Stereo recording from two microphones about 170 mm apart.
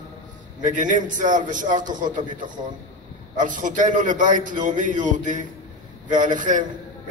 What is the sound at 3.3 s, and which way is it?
A man's voice, 50° right (ahead or behind).